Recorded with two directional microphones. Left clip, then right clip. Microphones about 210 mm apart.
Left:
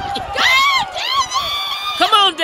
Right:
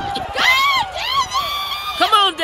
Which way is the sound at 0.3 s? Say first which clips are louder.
Left 2 dB; 55° left (ahead or behind).